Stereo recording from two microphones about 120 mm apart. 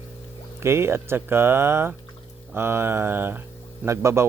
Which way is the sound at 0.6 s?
20° right (ahead or behind).